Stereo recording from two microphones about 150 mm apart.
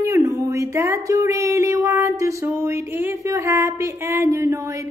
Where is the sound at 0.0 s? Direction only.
20° right (ahead or behind).